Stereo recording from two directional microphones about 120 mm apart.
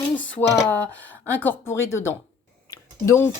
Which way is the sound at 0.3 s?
15° left (ahead or behind).